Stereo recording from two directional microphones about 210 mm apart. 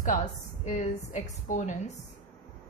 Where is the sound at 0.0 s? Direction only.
35° left (ahead or behind).